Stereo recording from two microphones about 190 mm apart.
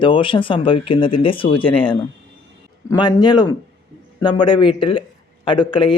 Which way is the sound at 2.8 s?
20° left (ahead or behind).